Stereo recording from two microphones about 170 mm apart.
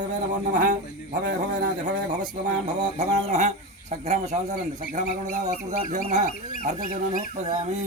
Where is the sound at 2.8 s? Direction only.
40° right (ahead or behind).